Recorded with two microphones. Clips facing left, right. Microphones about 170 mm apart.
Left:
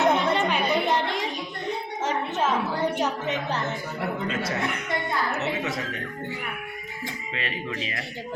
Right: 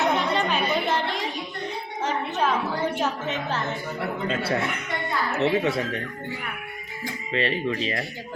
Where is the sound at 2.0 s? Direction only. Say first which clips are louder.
Right 2 dB; 20° left (ahead or behind).